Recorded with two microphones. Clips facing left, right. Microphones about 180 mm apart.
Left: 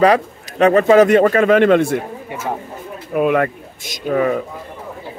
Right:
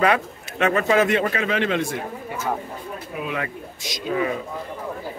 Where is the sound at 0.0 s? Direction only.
35° left (ahead or behind); by 2.0 s 55° left (ahead or behind).